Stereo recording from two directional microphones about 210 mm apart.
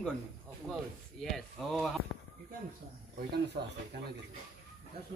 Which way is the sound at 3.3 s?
50° right (ahead or behind).